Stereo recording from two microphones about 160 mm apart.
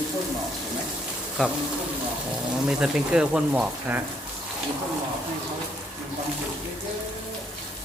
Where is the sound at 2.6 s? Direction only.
5° right (ahead or behind).